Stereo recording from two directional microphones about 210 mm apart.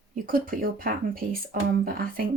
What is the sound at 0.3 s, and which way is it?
Speech, 40° right (ahead or behind).